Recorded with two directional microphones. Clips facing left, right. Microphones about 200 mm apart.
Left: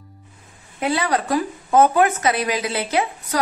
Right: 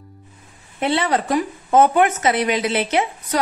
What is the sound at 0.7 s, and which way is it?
A woman's voice, 25° right (ahead or behind).